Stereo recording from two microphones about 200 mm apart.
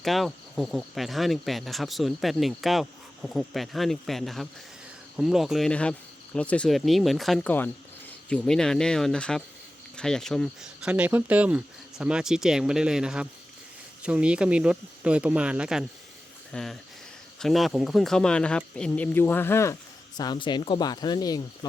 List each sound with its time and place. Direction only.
0.0 s speech: centre (ahead or behind); by 21.7 s 20° left (ahead or behind)